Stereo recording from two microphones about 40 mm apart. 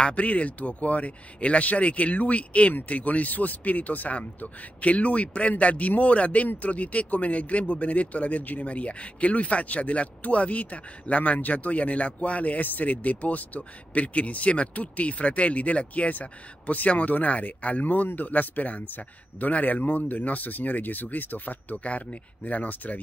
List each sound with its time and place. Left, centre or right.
0.0 s speech: left
21.7 s speech: left